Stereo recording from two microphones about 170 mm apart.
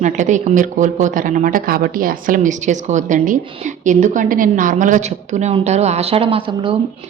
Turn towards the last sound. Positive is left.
turn(degrees=-30)  # may be behind; listen again after turning